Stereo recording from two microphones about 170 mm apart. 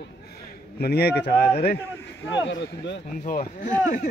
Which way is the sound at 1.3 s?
65° left (ahead or behind).